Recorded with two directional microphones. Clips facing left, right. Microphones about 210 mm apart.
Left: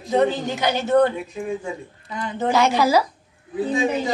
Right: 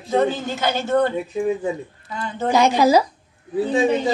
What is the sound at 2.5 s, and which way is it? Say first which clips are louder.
Speech: right 3 dB; 15° right (ahead or behind).